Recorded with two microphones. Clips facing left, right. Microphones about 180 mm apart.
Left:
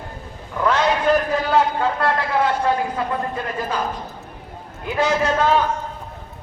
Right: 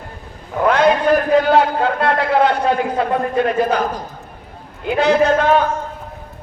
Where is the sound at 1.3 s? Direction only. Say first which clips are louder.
Right 6 dB; 65° right (ahead or behind).